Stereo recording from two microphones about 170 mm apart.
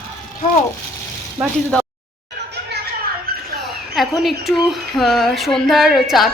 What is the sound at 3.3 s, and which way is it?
Rodents, 65° right (ahead or behind).